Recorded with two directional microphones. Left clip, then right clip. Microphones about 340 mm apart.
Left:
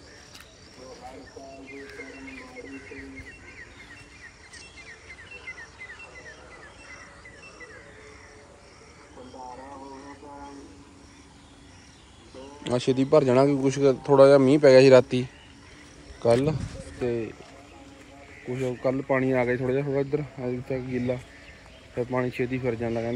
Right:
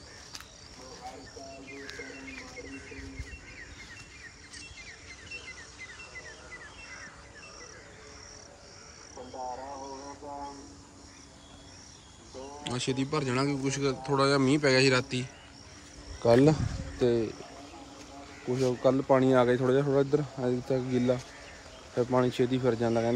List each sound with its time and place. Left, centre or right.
2.9 s music: centre
12.6 s speech: centre
16.2 s speech: centre
18.4 s speech: centre